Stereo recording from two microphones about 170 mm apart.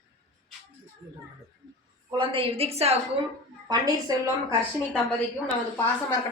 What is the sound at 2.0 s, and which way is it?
Speech, 30° right (ahead or behind).